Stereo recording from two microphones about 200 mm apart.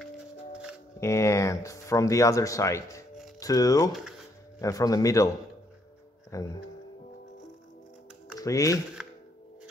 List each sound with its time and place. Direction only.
0.9 s speech: 15° left (ahead or behind)
6.3 s speech: 15° left (ahead or behind)
8.4 s speech: 15° left (ahead or behind)